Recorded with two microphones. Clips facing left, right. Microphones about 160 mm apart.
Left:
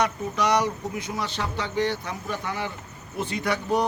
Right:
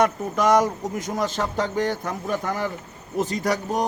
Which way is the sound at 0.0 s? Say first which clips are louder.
Right 4 dB; 45° right (ahead or behind).